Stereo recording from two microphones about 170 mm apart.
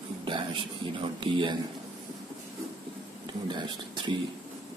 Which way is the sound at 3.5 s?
25° right (ahead or behind).